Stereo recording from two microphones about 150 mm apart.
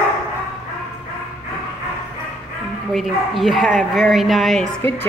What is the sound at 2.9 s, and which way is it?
Speech, centre (ahead or behind).